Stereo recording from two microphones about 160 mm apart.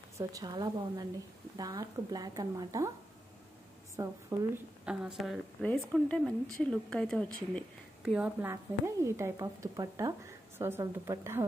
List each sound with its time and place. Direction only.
0.2 s a woman's voice: 25° right (ahead or behind)
3.9 s a woman's voice: 20° right (ahead or behind)
4.8 s a woman's voice: 5° right (ahead or behind)
8.0 s a woman's voice: 10° right (ahead or behind)